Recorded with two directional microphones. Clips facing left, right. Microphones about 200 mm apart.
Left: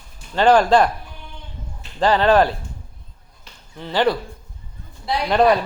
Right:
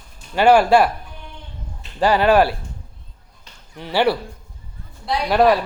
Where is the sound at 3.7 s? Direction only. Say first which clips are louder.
Right 1 dB; 15° right (ahead or behind).